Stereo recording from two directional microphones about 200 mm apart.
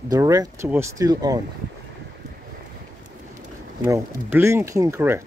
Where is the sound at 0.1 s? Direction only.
20° right (ahead or behind).